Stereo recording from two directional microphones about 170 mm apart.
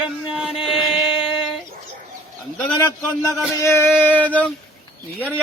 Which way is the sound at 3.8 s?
5° right (ahead or behind).